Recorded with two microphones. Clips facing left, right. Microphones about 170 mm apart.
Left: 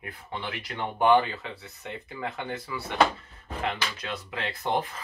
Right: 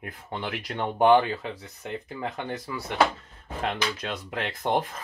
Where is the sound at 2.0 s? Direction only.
40° right (ahead or behind).